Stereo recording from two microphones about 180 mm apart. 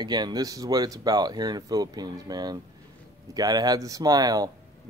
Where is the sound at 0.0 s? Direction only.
25° right (ahead or behind).